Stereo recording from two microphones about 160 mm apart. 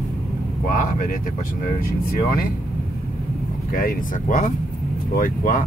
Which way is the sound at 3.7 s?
60° left (ahead or behind).